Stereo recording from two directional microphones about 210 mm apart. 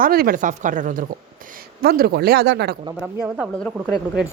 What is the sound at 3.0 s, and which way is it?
Speech, 5° right (ahead or behind).